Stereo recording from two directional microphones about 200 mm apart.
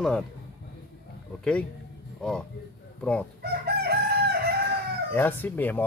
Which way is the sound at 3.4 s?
50° right (ahead or behind).